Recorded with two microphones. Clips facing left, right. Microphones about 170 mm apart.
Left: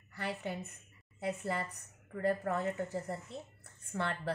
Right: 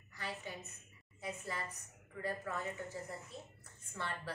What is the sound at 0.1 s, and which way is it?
A woman's voice, 60° left (ahead or behind).